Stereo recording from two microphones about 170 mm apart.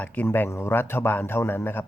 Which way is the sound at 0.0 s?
10° left (ahead or behind).